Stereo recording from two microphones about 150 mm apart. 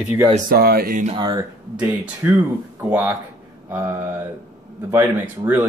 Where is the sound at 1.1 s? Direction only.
30° right (ahead or behind).